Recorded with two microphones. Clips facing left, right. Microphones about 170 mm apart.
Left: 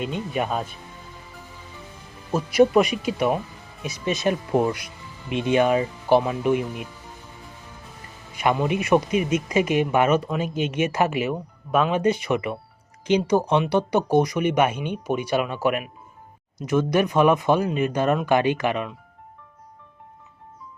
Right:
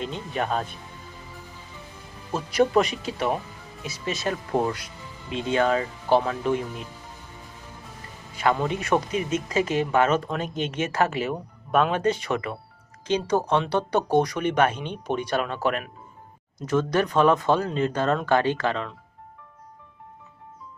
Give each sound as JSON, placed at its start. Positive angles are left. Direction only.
{"t": 0.0, "sound": "speech", "side_deg": 10}
{"t": 2.3, "sound": "speech", "side_deg": 10}
{"t": 8.4, "sound": "speech", "side_deg": 15}